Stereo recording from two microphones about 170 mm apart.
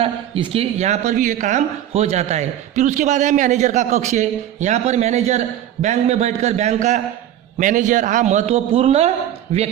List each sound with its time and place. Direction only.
0.0 s a woman's voice: 30° right (ahead or behind)